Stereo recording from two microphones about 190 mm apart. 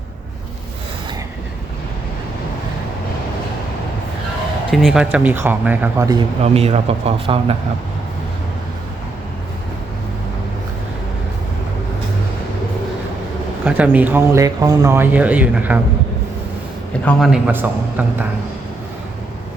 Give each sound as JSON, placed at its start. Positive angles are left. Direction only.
{"t": 4.7, "sound": "speech", "side_deg": 0}
{"t": 6.4, "sound": "a man's voice", "side_deg": -30}
{"t": 13.7, "sound": "speech", "side_deg": -10}
{"t": 17.1, "sound": "a man's voice", "side_deg": 0}